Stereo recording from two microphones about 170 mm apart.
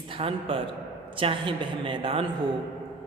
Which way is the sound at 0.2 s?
35° right (ahead or behind).